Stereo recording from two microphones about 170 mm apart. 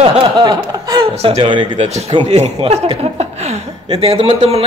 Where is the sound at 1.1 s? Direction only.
35° right (ahead or behind).